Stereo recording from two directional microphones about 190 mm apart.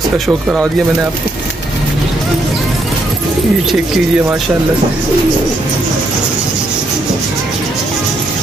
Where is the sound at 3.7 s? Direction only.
5° right (ahead or behind).